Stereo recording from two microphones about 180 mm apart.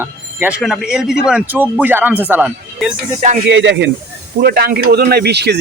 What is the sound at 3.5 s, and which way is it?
Speech, 80° right.